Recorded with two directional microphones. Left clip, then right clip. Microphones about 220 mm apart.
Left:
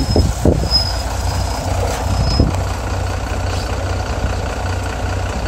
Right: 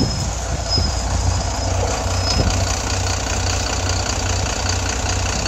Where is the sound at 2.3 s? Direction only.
45° right (ahead or behind).